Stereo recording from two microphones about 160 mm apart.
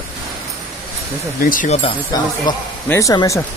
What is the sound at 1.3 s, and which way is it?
Speech, 60° left (ahead or behind).